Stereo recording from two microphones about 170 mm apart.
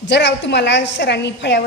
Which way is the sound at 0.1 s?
90° left.